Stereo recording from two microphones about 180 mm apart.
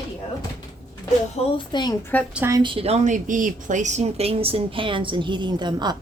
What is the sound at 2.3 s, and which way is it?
Speech, 15° right (ahead or behind).